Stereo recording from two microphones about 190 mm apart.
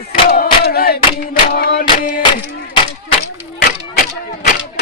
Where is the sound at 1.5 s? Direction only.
50° left (ahead or behind).